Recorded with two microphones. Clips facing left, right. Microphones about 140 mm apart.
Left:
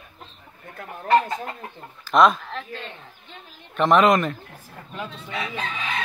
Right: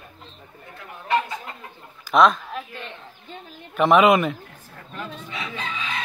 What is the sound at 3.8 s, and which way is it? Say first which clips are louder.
Speech: right 1 dB; 5° right (ahead or behind).